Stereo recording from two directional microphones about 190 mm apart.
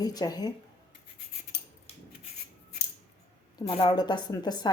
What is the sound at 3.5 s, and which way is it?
A woman's voice, 25° left (ahead or behind).